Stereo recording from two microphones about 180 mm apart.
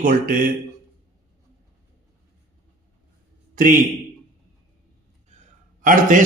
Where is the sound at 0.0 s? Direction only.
50° right (ahead or behind).